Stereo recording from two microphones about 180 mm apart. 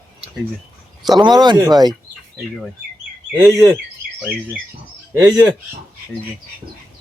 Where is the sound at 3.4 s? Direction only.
20° right (ahead or behind).